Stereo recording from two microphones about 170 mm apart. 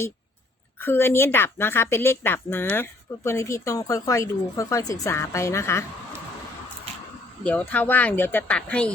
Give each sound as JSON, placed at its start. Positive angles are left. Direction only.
{"t": 0.8, "sound": "a woman's voice", "side_deg": 15}
{"t": 7.4, "sound": "a woman's voice", "side_deg": 10}